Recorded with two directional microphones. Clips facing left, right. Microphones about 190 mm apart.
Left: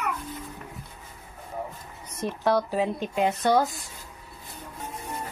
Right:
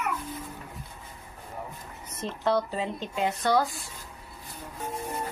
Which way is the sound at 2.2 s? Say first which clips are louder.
Left 2 dB; 10° left (ahead or behind).